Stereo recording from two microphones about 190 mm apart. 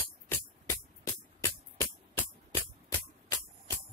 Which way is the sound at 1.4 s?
10° left (ahead or behind).